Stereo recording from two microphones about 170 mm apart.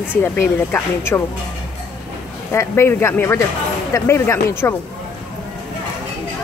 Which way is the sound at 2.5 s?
15° left (ahead or behind).